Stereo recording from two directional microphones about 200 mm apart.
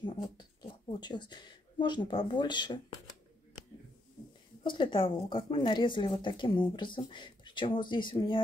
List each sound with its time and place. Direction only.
0.6 s a sound: 25° left (ahead or behind)
2.3 s speech: 20° left (ahead or behind)
4.6 s speech: 25° left (ahead or behind)